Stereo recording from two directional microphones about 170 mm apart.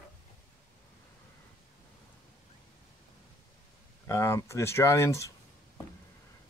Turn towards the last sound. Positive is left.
turn(degrees=15)  # may be behind; listen again after turning